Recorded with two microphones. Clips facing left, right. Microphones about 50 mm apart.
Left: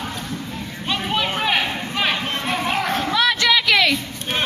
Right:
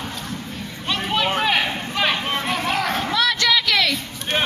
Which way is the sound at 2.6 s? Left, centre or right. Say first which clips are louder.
Left 2 dB; left.